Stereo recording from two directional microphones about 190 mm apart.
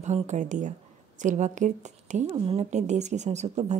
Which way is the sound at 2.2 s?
30° right (ahead or behind).